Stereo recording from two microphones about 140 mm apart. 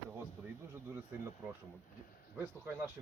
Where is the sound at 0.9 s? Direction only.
20° right (ahead or behind).